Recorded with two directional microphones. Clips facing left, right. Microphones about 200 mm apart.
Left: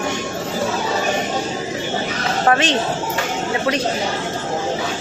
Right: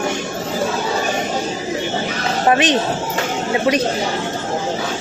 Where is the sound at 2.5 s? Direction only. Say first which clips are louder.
Right 2 dB; 15° right (ahead or behind).